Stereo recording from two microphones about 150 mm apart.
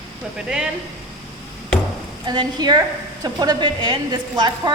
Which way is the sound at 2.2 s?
30° right (ahead or behind).